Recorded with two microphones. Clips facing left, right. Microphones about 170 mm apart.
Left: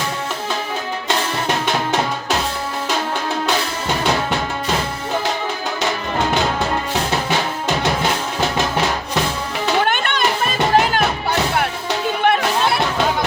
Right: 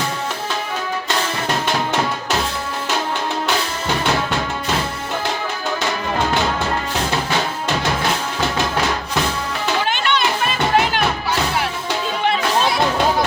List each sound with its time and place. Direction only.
9.8 s children playing: 50° left (ahead or behind)
12.2 s music: 60° left (ahead or behind)